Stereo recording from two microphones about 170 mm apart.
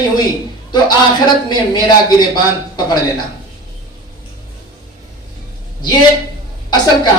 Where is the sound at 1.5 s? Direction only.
25° left (ahead or behind).